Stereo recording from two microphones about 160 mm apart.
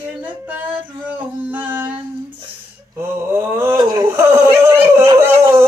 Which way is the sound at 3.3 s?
15° right (ahead or behind).